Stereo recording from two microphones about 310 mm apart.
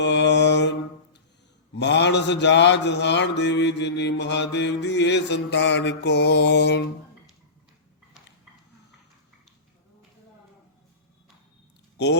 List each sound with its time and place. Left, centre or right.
0.0 s mantra: left